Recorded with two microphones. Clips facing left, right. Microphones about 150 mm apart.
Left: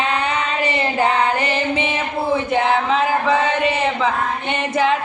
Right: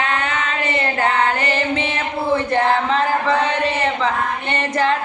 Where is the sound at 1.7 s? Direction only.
15° left (ahead or behind).